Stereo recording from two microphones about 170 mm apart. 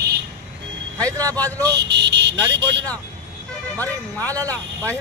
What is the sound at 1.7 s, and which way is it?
Speech, 85° right.